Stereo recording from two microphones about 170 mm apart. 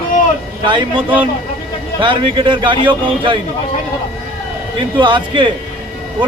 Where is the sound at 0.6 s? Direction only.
30° right (ahead or behind).